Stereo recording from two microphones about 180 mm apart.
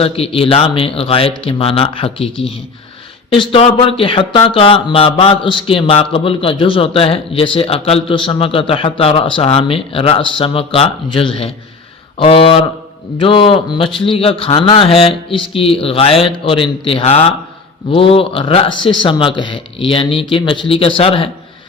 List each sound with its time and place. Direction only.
0.0 s speech: 30° left (ahead or behind)